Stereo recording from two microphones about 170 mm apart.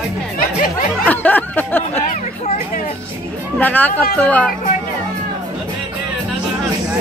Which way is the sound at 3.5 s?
10° left (ahead or behind).